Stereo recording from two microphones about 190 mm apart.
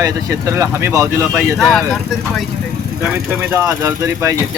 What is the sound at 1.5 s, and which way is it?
Speech, centre (ahead or behind).